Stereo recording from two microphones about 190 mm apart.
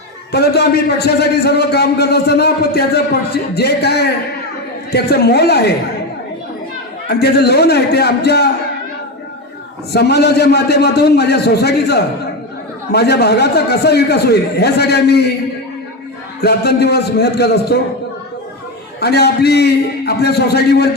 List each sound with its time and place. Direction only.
0.3 s a man's voice: 60° left (ahead or behind)
7.1 s a man's voice: 60° left (ahead or behind)
9.9 s a man's voice: 60° left (ahead or behind)
16.4 s a man's voice: 60° left (ahead or behind)
18.9 s a man's voice: 60° left (ahead or behind)